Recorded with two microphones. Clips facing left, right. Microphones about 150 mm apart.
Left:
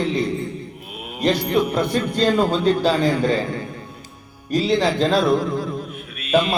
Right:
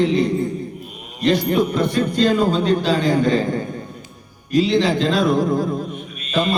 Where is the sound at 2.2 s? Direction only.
40° left (ahead or behind).